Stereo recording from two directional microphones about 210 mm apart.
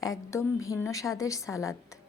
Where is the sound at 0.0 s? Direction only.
15° left (ahead or behind).